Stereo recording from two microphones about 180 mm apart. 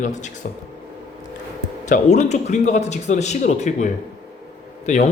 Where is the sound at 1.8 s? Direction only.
40° left (ahead or behind).